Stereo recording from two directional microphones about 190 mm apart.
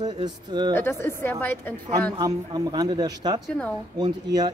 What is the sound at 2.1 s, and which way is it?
Speech, 20° right (ahead or behind).